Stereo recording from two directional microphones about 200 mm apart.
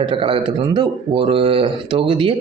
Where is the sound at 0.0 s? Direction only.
25° right (ahead or behind).